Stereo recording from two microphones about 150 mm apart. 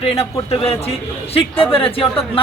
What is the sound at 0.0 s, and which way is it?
A man's voice, 40° left (ahead or behind).